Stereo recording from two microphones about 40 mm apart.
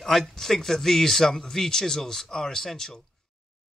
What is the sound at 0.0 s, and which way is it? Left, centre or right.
Speech, centre.